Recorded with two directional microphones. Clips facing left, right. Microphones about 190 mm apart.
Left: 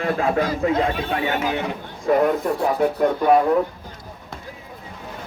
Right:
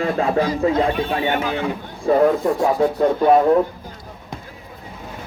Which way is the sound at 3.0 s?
25° right (ahead or behind).